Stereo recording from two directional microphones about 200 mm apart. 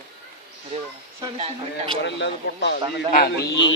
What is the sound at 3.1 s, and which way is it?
Speech, 50° left (ahead or behind).